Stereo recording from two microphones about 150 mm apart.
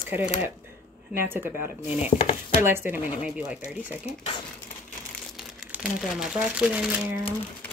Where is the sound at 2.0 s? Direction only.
40° left (ahead or behind).